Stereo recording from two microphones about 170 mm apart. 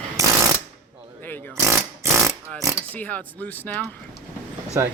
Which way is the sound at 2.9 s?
10° left (ahead or behind).